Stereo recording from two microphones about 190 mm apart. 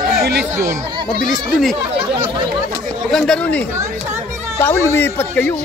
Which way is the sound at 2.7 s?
5° left (ahead or behind).